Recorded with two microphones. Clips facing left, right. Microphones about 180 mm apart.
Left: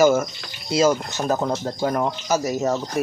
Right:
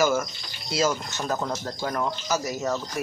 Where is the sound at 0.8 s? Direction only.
50° left (ahead or behind).